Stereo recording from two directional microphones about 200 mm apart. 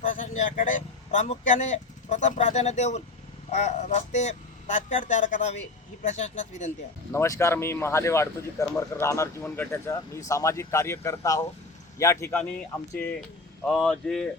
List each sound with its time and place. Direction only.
0.0 s speech: 40° left (ahead or behind)
7.1 s speech: 15° left (ahead or behind)
13.7 s speech: centre (ahead or behind)